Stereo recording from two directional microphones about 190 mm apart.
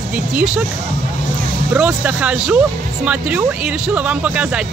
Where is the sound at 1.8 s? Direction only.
5° right (ahead or behind).